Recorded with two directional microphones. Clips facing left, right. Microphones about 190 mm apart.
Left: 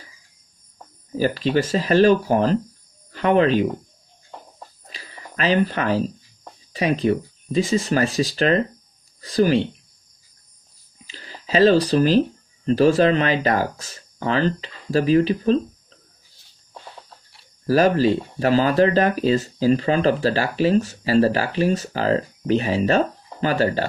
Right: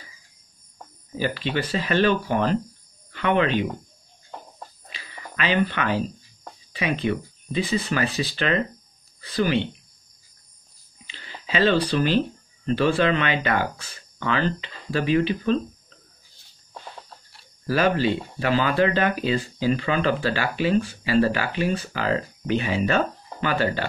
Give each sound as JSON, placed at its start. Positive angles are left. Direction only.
{"t": 1.1, "sound": "speech", "side_deg": 40}
{"t": 4.8, "sound": "a sound", "side_deg": 40}
{"t": 6.7, "sound": "speech", "side_deg": 40}
{"t": 11.1, "sound": "speech", "side_deg": 40}
{"t": 17.6, "sound": "speech", "side_deg": 40}